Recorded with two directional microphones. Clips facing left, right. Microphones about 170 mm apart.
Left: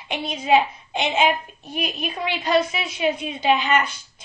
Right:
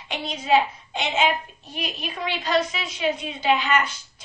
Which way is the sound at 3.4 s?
25° left (ahead or behind).